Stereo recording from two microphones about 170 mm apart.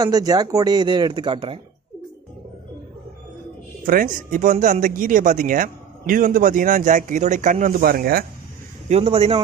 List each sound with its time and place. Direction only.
0.0 s speech: 25° right (ahead or behind)
3.8 s speech: 55° right (ahead or behind)
8.8 s a man's voice: 40° right (ahead or behind)